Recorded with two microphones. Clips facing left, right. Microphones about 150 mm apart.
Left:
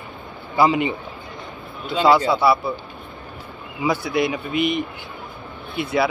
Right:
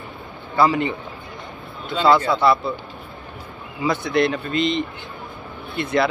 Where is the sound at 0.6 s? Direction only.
15° left (ahead or behind).